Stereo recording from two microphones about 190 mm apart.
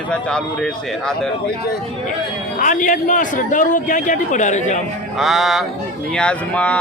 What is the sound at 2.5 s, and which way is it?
A man's voice, 45° left (ahead or behind).